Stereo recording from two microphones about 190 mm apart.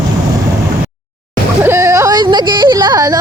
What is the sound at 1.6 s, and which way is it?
Music, 15° right (ahead or behind).